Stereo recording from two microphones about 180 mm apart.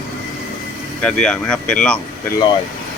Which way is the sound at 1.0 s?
5° left (ahead or behind).